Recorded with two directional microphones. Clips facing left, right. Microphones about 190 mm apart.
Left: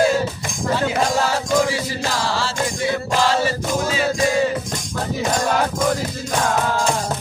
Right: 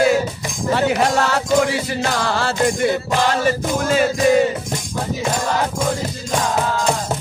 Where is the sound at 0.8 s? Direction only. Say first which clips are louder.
Right 3 dB; 65° right (ahead or behind).